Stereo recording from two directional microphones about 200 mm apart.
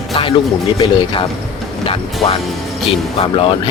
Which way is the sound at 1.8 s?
30° left (ahead or behind).